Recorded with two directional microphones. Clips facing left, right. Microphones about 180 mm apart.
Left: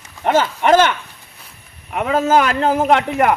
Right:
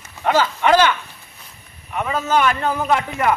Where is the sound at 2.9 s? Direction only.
65° left (ahead or behind).